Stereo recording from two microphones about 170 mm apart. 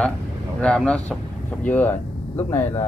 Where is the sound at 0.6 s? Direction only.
5° left (ahead or behind).